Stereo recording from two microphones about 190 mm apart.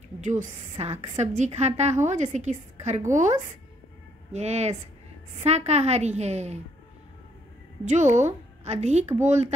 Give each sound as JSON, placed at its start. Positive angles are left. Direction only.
{"t": 0.2, "sound": "a woman's voice", "side_deg": -40}
{"t": 7.8, "sound": "a woman's voice", "side_deg": -40}